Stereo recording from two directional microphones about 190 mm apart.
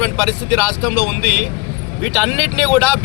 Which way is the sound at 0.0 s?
10° left (ahead or behind).